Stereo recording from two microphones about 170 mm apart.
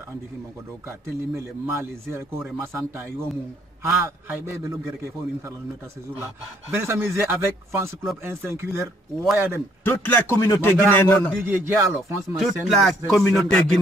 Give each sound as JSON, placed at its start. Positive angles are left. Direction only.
{"t": 0.8, "sound": "a man's voice", "side_deg": -15}
{"t": 6.7, "sound": "a man's voice", "side_deg": -15}
{"t": 9.8, "sound": "a man's voice", "side_deg": 10}
{"t": 11.4, "sound": "a man's voice", "side_deg": -15}
{"t": 12.4, "sound": "speech", "side_deg": 0}